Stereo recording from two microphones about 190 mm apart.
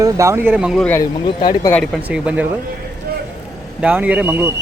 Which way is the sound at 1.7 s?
5° left (ahead or behind).